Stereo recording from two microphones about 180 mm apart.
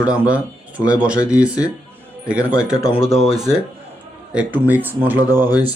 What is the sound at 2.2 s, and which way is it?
Speech, 5° right (ahead or behind).